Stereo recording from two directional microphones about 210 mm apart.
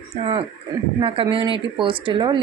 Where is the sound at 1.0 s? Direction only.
25° right (ahead or behind).